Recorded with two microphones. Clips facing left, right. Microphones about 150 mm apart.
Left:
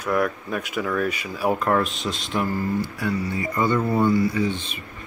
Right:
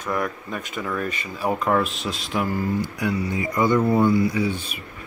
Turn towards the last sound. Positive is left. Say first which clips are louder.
# even
turn(degrees=-10)  # may be behind; listen again after turning